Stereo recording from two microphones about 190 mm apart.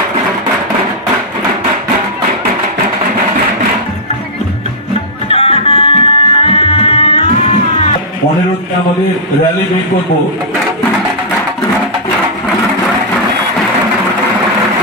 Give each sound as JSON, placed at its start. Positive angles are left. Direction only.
{"t": 5.3, "sound": "music", "side_deg": 30}